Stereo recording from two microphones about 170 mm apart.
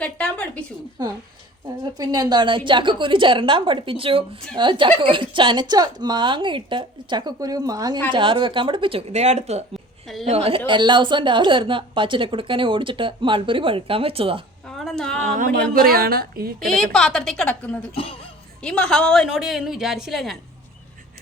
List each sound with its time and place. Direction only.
0.0 s a sound: 5° left (ahead or behind)
1.8 s a woman's voice: 25° right (ahead or behind)
14.8 s a woman's voice: centre (ahead or behind)
15.2 s a woman's voice: 50° right (ahead or behind)
16.6 s a woman's voice: 5° left (ahead or behind)